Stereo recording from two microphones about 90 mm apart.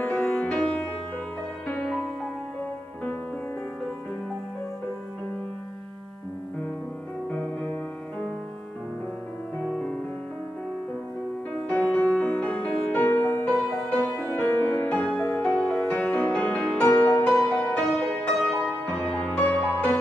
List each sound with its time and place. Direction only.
0.2 s music: 10° left (ahead or behind)
11.8 s music: 15° left (ahead or behind)
16.0 s music: 20° left (ahead or behind)
18.4 s music: centre (ahead or behind)
18.7 s music: 15° left (ahead or behind)